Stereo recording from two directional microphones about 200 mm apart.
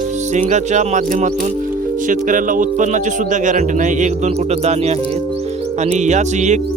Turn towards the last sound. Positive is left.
turn(degrees=-35)  # may be behind; listen again after turning